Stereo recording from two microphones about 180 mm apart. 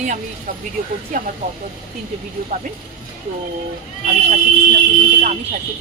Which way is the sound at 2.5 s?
55° right (ahead or behind).